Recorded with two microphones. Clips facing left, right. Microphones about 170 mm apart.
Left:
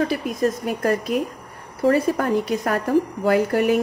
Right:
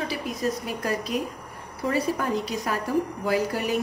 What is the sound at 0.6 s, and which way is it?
A woman's voice, 50° left (ahead or behind).